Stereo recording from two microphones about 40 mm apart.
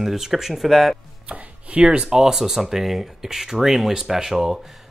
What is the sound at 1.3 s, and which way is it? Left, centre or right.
Speech, right.